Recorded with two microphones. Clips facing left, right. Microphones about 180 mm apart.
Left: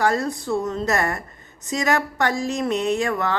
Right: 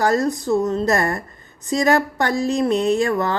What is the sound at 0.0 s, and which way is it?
Speech, 40° right (ahead or behind).